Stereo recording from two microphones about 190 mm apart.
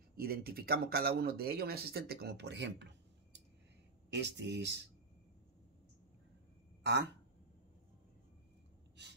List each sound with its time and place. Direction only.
0.1 s speech: 55° right (ahead or behind)
4.1 s speech: 65° right (ahead or behind)
6.8 s speech: 65° right (ahead or behind)
9.0 s gasp: 65° right (ahead or behind)